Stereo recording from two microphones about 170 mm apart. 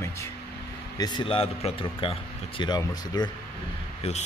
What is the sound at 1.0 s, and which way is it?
A man's voice, 25° left (ahead or behind).